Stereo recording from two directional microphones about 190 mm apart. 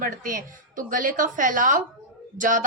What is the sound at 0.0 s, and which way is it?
A woman's voice, 45° right (ahead or behind).